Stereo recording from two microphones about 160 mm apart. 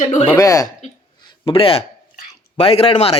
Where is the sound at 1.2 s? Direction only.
30° left (ahead or behind).